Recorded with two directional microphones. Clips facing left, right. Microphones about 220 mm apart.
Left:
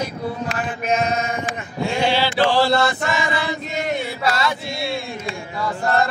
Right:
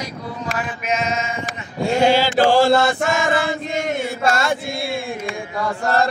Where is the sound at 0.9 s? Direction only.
60° left (ahead or behind).